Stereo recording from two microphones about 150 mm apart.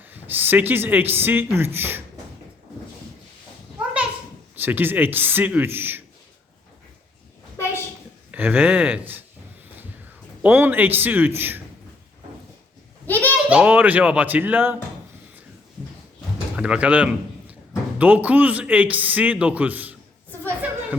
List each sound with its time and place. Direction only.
0.0 s a man's voice: 10° right (ahead or behind)
4.6 s a man's voice: 15° right (ahead or behind)
7.5 s a sound: 20° left (ahead or behind)
8.3 s a man's voice: 10° right (ahead or behind)
10.4 s a man's voice: 15° right (ahead or behind)
13.1 s a sound: 10° left (ahead or behind)
13.5 s a man's voice: 10° right (ahead or behind)
16.6 s a man's voice: 5° right (ahead or behind)